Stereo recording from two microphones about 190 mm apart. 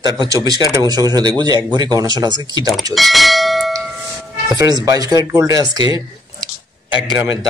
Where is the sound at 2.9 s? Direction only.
Centre (ahead or behind).